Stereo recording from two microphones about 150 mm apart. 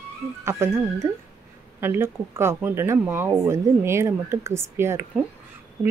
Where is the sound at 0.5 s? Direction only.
20° right (ahead or behind).